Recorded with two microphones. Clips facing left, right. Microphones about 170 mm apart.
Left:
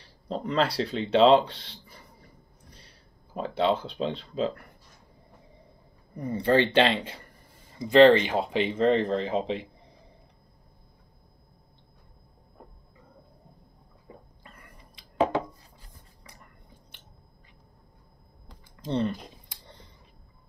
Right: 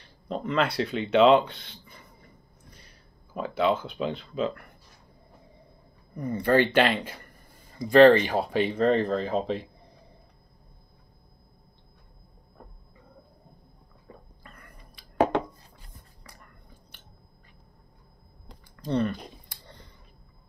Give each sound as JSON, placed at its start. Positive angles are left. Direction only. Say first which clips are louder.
{"t": 0.3, "sound": "a sound", "louder": "even", "side_deg": 35}
{"t": 3.3, "sound": "speech", "louder": "even", "side_deg": 30}
{"t": 6.1, "sound": "speech", "louder": "right 1 dB", "side_deg": 25}
{"t": 14.4, "sound": "whispering", "louder": "right 1 dB", "side_deg": 25}
{"t": 18.8, "sound": "speech", "louder": "right 1 dB", "side_deg": 25}